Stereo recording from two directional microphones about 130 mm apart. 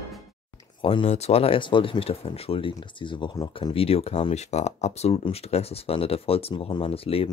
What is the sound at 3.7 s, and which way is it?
Speech, 50° left (ahead or behind).